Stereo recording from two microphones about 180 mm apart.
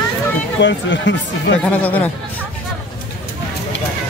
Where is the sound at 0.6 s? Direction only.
85° left.